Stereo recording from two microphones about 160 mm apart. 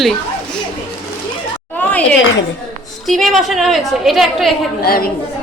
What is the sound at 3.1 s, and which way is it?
A woman's voice, centre (ahead or behind).